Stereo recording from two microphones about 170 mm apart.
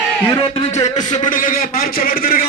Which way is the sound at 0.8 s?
45° left (ahead or behind).